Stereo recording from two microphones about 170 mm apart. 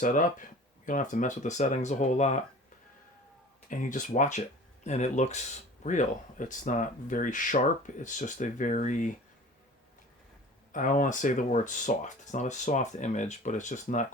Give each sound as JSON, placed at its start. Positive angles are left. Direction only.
{"t": 0.0, "sound": "speech", "side_deg": 50}
{"t": 3.7, "sound": "speech", "side_deg": 50}
{"t": 10.7, "sound": "speech", "side_deg": 50}